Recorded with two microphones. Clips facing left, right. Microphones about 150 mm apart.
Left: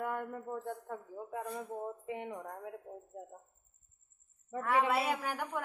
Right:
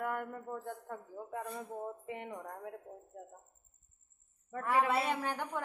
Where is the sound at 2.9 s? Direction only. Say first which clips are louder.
Left 3 dB; 10° left (ahead or behind).